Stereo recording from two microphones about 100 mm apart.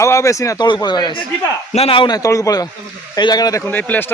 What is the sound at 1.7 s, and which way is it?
Speech, 75° left (ahead or behind).